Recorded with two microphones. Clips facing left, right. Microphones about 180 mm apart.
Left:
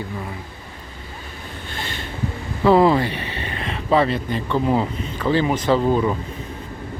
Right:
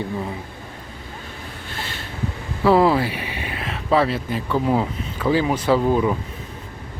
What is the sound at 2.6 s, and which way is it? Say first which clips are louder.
Speech: left 1 dB; 5° right (ahead or behind).